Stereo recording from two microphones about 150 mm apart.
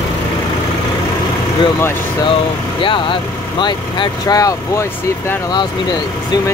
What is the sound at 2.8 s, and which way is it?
Speech, 35° left (ahead or behind).